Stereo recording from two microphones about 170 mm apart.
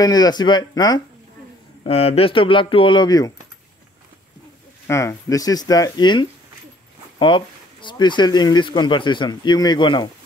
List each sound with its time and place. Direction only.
0.0 s speech: 25° left (ahead or behind)
1.9 s speech: 35° left (ahead or behind)
4.8 s speech: 15° left (ahead or behind)